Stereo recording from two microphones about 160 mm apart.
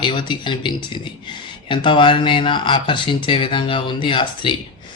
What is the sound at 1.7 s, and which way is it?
Speech, 30° left (ahead or behind).